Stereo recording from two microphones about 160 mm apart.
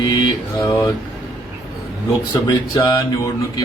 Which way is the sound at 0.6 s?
20° left (ahead or behind).